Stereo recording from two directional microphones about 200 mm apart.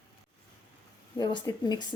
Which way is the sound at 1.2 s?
20° left (ahead or behind).